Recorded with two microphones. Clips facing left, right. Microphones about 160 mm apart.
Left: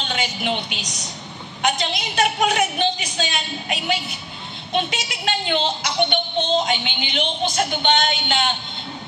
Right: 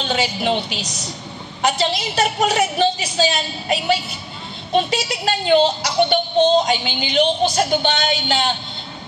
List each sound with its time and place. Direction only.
0.0 s speech: 35° right (ahead or behind)